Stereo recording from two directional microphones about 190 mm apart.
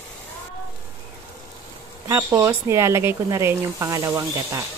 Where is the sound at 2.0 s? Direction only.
15° right (ahead or behind).